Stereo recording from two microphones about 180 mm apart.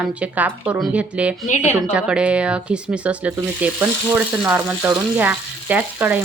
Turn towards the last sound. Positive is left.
turn(degrees=-10)  # may be behind; listen again after turning